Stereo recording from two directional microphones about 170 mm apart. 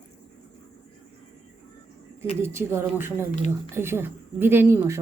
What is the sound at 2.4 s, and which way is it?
Speech, 15° right (ahead or behind).